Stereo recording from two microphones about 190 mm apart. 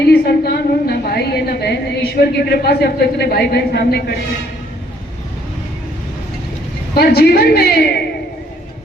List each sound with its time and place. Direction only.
0.1 s a woman's voice: 55° left (ahead or behind)
6.9 s a woman's voice: 55° left (ahead or behind)